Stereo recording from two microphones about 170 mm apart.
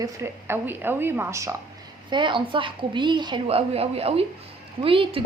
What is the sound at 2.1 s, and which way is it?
A woman's voice, 30° right (ahead or behind).